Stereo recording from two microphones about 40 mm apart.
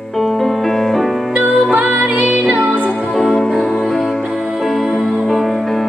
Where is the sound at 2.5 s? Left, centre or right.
Right.